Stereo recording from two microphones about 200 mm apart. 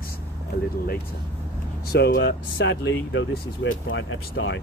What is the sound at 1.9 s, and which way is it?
Speech, 55° left (ahead or behind).